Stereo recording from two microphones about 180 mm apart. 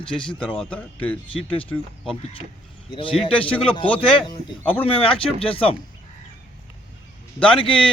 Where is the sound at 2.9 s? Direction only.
30° left (ahead or behind).